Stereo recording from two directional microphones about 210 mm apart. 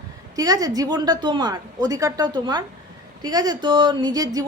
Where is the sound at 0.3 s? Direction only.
15° right (ahead or behind).